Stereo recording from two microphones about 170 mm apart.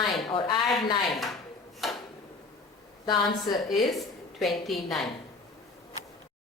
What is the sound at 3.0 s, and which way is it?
Speech, 25° left (ahead or behind).